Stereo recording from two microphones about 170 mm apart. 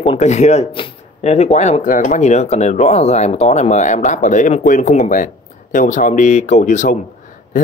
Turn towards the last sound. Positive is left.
turn(degrees=50)  # may be behind; listen again after turning